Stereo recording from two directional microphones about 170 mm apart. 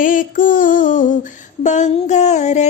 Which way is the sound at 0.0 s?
50° left (ahead or behind).